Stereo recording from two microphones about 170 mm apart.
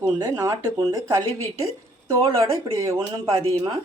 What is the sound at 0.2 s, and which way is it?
A woman's voice, 20° right (ahead or behind).